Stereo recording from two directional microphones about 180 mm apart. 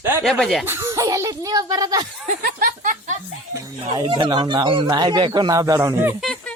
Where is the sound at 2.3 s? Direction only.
50° right (ahead or behind).